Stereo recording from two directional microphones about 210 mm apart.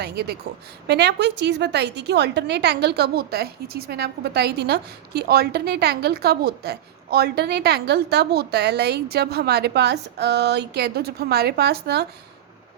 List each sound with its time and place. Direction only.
0.0 s a woman's voice: 50° right (ahead or behind)